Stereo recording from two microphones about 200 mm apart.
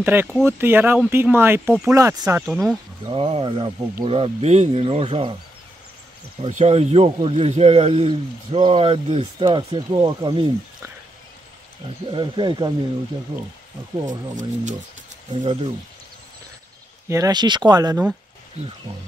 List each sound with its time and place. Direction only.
0.0 s speech: 10° right (ahead or behind)
2.4 s speech: 5° right (ahead or behind)
3.1 s a man's voice: 25° right (ahead or behind)
6.4 s a man's voice: 35° right (ahead or behind)
12.1 s a man's voice: 25° right (ahead or behind)
14.0 s speech: 40° right (ahead or behind)
15.3 s a man's voice: 25° right (ahead or behind)
17.1 s a man's voice: 20° right (ahead or behind)